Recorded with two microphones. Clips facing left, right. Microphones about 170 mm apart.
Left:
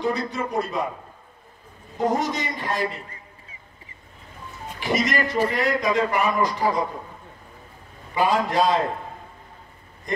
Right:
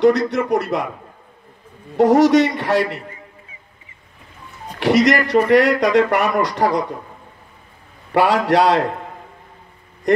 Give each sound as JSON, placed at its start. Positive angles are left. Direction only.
{"t": 0.0, "sound": "speech", "side_deg": -75}
{"t": 2.0, "sound": "speech", "side_deg": -75}
{"t": 4.7, "sound": "speech", "side_deg": -70}
{"t": 8.1, "sound": "speech", "side_deg": -70}
{"t": 10.1, "sound": "speech", "side_deg": -70}